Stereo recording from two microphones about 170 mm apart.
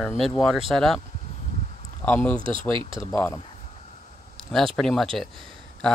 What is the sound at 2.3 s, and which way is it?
Speech, 30° right (ahead or behind).